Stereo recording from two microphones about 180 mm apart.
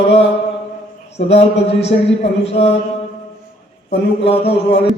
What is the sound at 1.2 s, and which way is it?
Speech, 35° left (ahead or behind).